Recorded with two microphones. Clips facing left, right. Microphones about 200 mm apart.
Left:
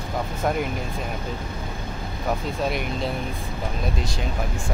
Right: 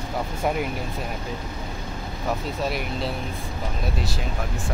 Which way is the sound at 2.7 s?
Centre (ahead or behind).